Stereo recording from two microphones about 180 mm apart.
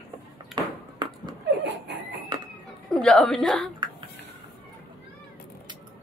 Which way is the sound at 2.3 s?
25° right (ahead or behind).